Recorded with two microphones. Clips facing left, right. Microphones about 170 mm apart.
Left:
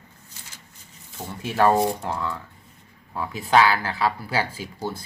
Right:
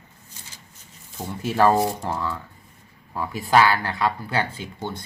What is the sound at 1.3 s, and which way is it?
Speech, centre (ahead or behind).